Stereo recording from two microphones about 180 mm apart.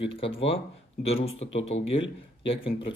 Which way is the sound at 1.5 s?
90° left.